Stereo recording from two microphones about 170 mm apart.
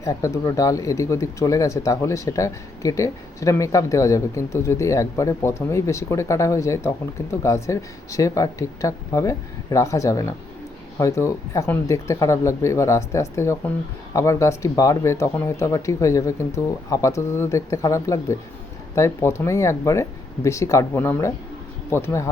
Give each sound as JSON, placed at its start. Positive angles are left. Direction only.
{"t": 0.0, "sound": "speech", "side_deg": 20}